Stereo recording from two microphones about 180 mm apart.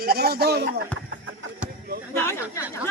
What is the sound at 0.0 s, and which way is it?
Speech, 55° right (ahead or behind).